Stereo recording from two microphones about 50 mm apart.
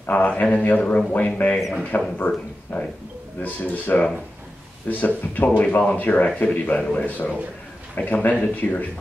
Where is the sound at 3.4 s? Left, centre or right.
Left.